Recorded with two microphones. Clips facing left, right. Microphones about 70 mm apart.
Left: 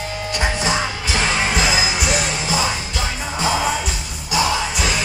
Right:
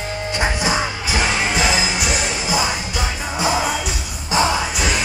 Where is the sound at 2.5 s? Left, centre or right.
Centre.